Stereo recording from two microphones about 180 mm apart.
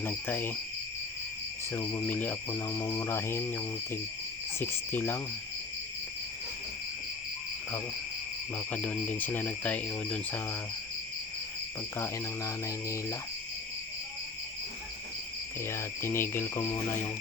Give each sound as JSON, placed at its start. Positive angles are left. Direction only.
{"t": 0.0, "sound": "speech", "side_deg": 10}
{"t": 1.7, "sound": "cricket", "side_deg": 20}
{"t": 2.0, "sound": "speech", "side_deg": 10}
{"t": 4.6, "sound": "speech", "side_deg": 10}
{"t": 8.5, "sound": "speech", "side_deg": 10}
{"t": 11.9, "sound": "speech", "side_deg": 15}
{"t": 15.6, "sound": "speech", "side_deg": 15}